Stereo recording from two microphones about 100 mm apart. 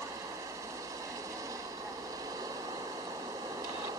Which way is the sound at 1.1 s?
35° right (ahead or behind).